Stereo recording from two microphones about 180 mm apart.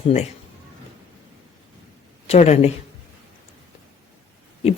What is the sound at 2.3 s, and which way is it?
Speech, 40° left (ahead or behind).